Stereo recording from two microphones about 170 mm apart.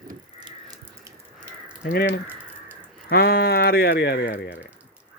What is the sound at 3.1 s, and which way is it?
Speech, 65° left (ahead or behind).